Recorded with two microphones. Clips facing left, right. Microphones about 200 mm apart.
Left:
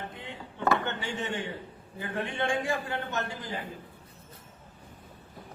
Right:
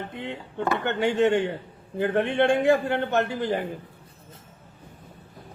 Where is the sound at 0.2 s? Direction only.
65° right (ahead or behind).